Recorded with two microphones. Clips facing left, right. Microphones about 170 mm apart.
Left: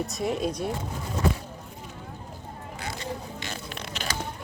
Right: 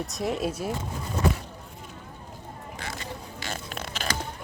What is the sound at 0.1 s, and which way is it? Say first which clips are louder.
Speech: left 1 dB; centre (ahead or behind).